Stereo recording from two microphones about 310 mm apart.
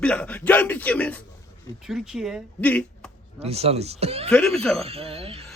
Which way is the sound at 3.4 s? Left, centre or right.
Centre.